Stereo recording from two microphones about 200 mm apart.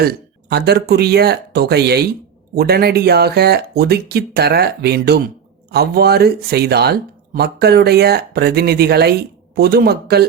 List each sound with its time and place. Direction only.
0.0 s speech: 50° right (ahead or behind)